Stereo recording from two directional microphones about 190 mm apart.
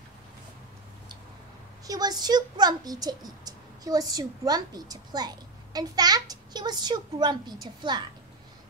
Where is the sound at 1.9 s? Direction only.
20° right (ahead or behind).